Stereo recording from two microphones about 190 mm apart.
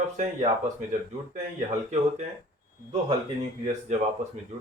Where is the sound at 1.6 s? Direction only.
35° right (ahead or behind).